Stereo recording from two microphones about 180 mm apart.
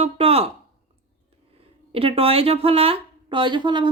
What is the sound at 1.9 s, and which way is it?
Speech, 30° right (ahead or behind).